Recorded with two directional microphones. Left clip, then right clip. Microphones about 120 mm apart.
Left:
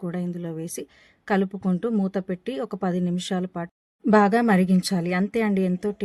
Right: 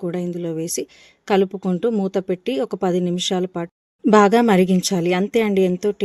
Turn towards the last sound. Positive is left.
turn(degrees=-25)  # may be behind; listen again after turning